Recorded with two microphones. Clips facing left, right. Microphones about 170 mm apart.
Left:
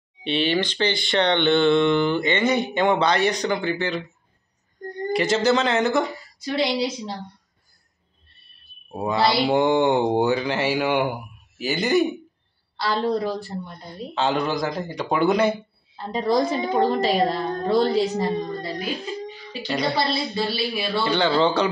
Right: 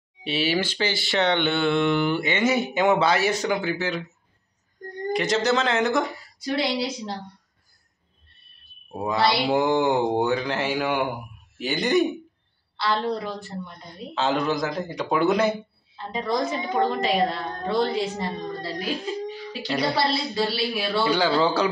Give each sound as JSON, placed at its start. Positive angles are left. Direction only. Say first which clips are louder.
{"t": 0.2, "sound": "speech", "louder": "left 2 dB", "side_deg": -5}
{"t": 5.1, "sound": "speech", "louder": "left 3 dB", "side_deg": 0}
{"t": 8.9, "sound": "speech", "louder": "left 2 dB", "side_deg": 0}
{"t": 12.7, "sound": "a woman's voice", "louder": "left 2 dB", "side_deg": 40}
{"t": 13.8, "sound": "speech", "louder": "left 1 dB", "side_deg": 0}
{"t": 16.0, "sound": "a woman's voice", "louder": "left 4 dB", "side_deg": 35}
{"t": 18.8, "sound": "speech", "louder": "right 1 dB", "side_deg": 0}